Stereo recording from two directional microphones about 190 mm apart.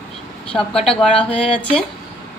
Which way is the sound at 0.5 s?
5° left (ahead or behind).